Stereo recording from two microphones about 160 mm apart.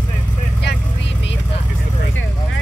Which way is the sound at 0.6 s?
90° left.